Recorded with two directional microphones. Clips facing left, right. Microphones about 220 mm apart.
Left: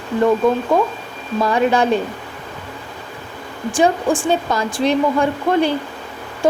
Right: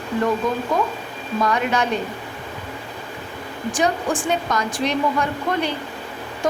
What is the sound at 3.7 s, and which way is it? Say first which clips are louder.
Speech: left 6 dB; 30° left (ahead or behind).